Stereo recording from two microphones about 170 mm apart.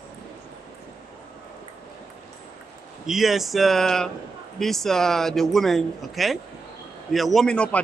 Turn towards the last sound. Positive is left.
turn(degrees=5)  # may be behind; listen again after turning